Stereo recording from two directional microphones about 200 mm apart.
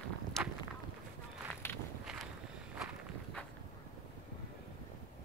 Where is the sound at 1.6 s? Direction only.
10° left (ahead or behind).